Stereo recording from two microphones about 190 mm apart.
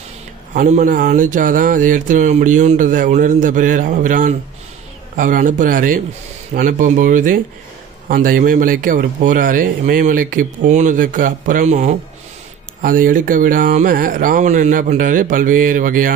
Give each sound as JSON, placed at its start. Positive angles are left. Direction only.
{"t": 0.6, "sound": "speech", "side_deg": -45}